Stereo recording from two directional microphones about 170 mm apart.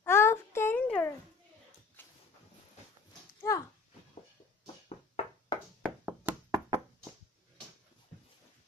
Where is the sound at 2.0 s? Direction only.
10° left (ahead or behind).